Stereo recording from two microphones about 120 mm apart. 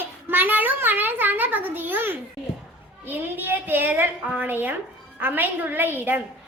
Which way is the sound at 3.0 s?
15° right (ahead or behind).